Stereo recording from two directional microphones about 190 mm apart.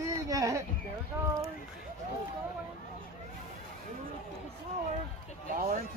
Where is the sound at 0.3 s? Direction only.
20° right (ahead or behind).